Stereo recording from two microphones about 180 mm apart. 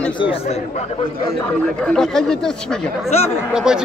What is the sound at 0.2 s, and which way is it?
Speech, 30° left (ahead or behind).